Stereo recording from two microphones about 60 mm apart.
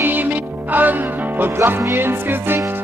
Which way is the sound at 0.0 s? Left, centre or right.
Right.